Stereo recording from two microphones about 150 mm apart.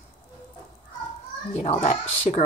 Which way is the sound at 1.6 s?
50° left (ahead or behind).